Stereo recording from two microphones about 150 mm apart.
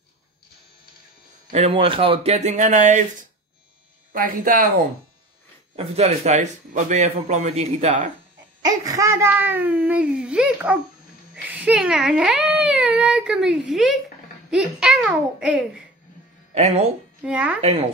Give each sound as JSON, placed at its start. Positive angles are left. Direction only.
{"t": 1.5, "sound": "a man's voice", "side_deg": -40}
{"t": 4.1, "sound": "speech", "side_deg": -65}
{"t": 5.8, "sound": "a man's voice", "side_deg": -45}
{"t": 8.6, "sound": "a child's voice", "side_deg": -20}
{"t": 16.5, "sound": "speech", "side_deg": -45}
{"t": 17.2, "sound": "a child's voice", "side_deg": -10}
{"t": 17.6, "sound": "a man's voice", "side_deg": -45}